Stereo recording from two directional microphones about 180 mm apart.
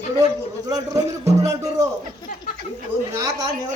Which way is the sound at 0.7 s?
20° right (ahead or behind).